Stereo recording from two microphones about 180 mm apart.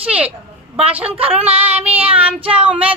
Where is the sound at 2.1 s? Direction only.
10° right (ahead or behind).